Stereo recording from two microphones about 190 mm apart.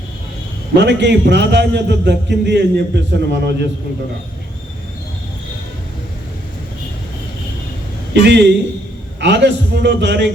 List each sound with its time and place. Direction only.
0.8 s a man's voice: 65° right (ahead or behind)
8.1 s a man's voice: 65° right (ahead or behind)